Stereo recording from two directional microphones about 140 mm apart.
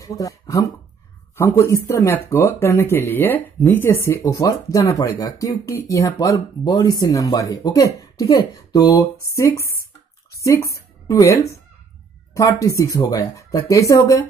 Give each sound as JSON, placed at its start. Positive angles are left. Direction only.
{"t": 0.0, "sound": "speech", "side_deg": 25}
{"t": 10.3, "sound": "a sound", "side_deg": 20}
{"t": 12.4, "sound": "speech", "side_deg": 25}